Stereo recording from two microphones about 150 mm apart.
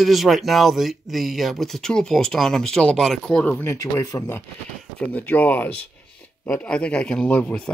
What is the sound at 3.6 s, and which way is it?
Speech, 20° left (ahead or behind).